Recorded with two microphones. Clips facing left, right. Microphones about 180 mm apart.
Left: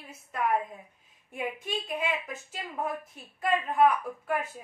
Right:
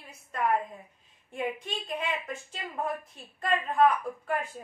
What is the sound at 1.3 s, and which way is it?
A woman's voice, 5° left (ahead or behind).